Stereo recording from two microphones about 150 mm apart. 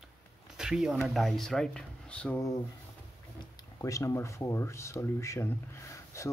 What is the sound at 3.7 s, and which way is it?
Speech, 20° left (ahead or behind).